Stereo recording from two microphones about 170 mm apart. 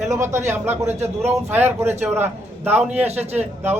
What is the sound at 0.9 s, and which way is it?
Speech, 40° right (ahead or behind).